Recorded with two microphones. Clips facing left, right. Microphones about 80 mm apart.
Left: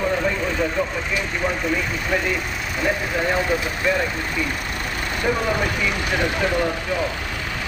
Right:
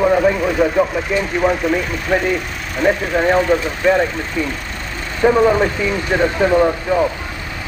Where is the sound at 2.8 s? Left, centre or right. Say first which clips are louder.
Right 7 dB; right.